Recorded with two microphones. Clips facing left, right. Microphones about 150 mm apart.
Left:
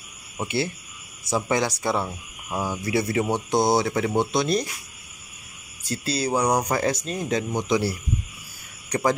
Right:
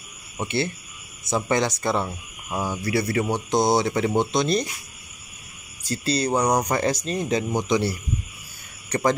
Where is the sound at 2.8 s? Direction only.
20° left (ahead or behind).